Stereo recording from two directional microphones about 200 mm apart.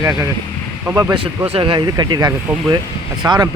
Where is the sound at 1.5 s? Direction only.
25° right (ahead or behind).